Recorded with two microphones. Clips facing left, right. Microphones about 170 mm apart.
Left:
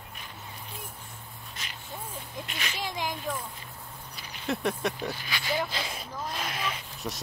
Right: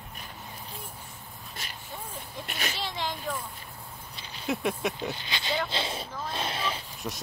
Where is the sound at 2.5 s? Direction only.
50° right (ahead or behind).